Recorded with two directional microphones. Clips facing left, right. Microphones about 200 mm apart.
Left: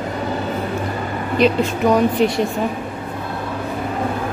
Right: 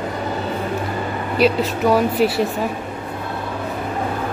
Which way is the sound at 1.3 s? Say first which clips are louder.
Left 1 dB; 5° right (ahead or behind).